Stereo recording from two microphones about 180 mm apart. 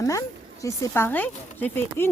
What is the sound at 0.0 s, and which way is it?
Speech, 15° left (ahead or behind).